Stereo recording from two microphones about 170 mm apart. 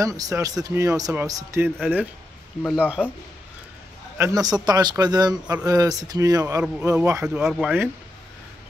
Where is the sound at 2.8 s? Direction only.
5° right (ahead or behind).